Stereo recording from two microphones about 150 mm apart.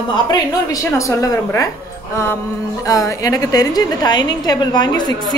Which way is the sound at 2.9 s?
20° left (ahead or behind).